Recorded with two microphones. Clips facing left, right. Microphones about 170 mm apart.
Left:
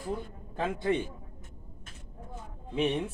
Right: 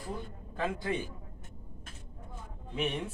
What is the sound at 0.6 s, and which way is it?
Speech, 25° left (ahead or behind).